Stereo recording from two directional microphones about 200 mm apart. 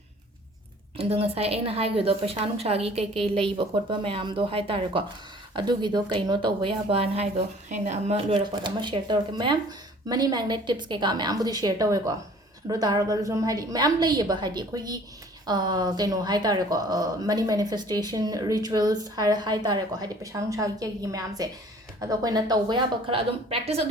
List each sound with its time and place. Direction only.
0.9 s a woman's voice: 30° right (ahead or behind)